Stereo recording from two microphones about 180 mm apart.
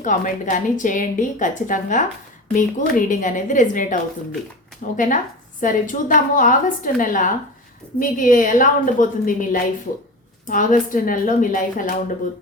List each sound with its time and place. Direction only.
0.0 s a woman's voice: 45° left (ahead or behind)
4.9 s a woman's voice: 45° left (ahead or behind)